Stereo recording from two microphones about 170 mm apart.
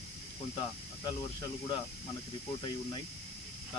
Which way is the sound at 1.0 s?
25° left (ahead or behind).